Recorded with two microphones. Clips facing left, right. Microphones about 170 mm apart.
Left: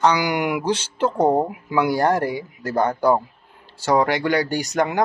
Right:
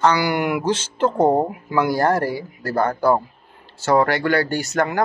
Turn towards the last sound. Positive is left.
turn(degrees=15)  # may be behind; listen again after turning